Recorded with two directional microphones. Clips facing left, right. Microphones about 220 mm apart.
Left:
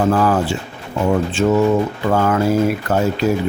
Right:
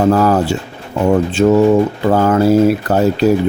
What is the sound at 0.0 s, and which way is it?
Speech, 40° right (ahead or behind).